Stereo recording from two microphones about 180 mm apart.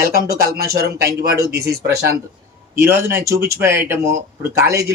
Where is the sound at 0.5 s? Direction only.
60° right (ahead or behind).